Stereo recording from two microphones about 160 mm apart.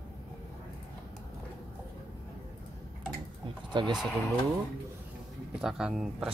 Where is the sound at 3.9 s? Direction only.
Centre (ahead or behind).